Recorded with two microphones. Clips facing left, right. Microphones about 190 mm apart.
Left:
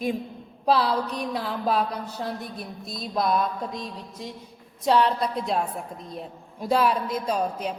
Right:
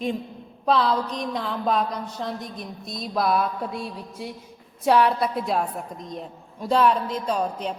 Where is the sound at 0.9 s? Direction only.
10° left (ahead or behind).